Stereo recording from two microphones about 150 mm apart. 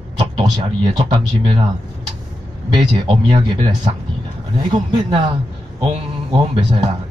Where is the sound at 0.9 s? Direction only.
30° right (ahead or behind).